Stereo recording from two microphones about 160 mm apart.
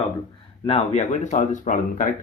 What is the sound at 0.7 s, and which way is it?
Speech, 45° left (ahead or behind).